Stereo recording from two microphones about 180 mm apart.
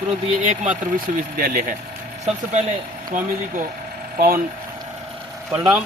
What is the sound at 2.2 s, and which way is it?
Speech, 40° right (ahead or behind).